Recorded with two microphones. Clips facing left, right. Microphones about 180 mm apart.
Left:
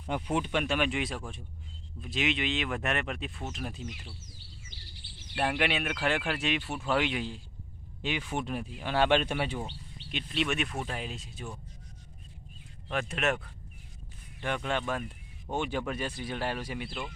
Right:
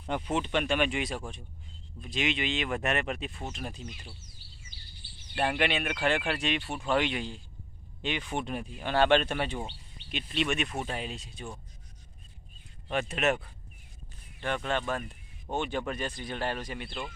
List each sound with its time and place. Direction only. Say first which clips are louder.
0.3 s speech: right 1 dB; 5° left (ahead or behind)
5.3 s speech: right 1 dB; centre (ahead or behind)
12.9 s speech: right 2 dB; centre (ahead or behind)
14.4 s speech: right 1 dB; 10° left (ahead or behind)